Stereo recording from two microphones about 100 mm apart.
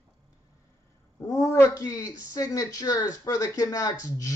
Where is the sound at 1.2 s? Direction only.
35° left (ahead or behind).